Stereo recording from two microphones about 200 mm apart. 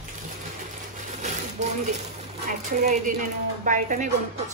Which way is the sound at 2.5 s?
40° right (ahead or behind).